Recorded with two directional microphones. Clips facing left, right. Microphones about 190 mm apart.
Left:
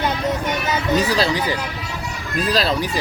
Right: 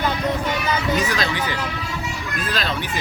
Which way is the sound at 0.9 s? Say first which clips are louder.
Left 4 dB; 35° left (ahead or behind).